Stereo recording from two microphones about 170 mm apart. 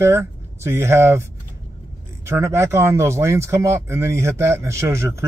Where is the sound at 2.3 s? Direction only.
15° right (ahead or behind).